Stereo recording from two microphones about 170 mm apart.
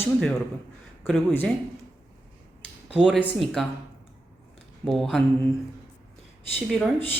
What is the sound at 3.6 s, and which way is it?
Speech, centre (ahead or behind).